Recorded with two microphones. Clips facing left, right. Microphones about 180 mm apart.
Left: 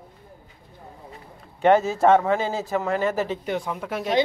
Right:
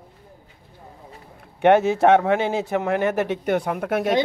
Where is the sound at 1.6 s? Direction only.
65° right (ahead or behind).